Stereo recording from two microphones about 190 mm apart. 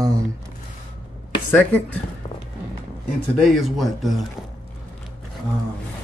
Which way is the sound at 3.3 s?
Centre (ahead or behind).